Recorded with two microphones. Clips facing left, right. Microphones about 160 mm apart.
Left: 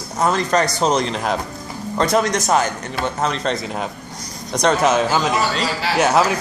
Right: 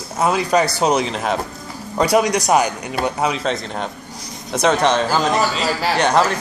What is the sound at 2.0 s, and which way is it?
Speech, 10° right (ahead or behind).